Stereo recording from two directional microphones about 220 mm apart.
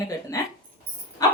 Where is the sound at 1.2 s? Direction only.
15° left (ahead or behind).